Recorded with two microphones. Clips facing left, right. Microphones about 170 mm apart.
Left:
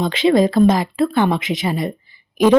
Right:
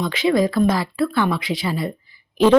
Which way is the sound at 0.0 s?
25° left (ahead or behind).